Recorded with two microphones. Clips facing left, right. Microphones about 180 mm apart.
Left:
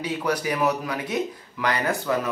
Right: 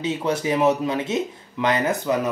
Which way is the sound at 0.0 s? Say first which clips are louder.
Right 2 dB; 25° right (ahead or behind).